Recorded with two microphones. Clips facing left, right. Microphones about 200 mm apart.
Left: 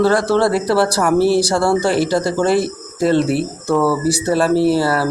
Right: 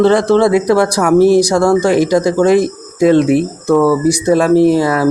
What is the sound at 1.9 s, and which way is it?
Speech, 10° right (ahead or behind).